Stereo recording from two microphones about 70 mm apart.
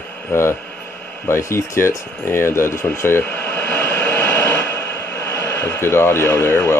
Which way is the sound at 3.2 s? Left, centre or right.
Left.